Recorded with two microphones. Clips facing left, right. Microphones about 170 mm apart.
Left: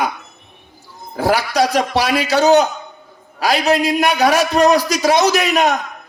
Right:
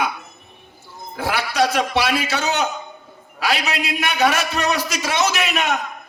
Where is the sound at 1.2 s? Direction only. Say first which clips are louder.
Left 5 dB; 40° left (ahead or behind).